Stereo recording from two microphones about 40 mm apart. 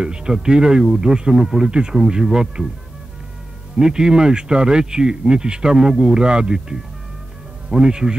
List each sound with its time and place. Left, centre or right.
0.0 s speech: centre
3.7 s speech: centre